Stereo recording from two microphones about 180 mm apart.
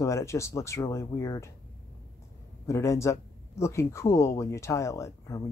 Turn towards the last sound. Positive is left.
turn(degrees=15)  # may be behind; listen again after turning